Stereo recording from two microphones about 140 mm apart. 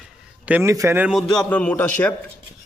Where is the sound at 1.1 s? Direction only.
Centre (ahead or behind).